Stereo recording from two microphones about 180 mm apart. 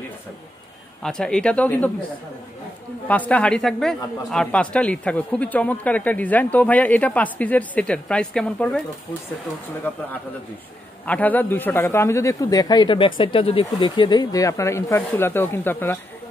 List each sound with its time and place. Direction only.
1.0 s speech: 5° left (ahead or behind)
3.1 s speech: 10° left (ahead or behind)
11.1 s speech: 10° left (ahead or behind)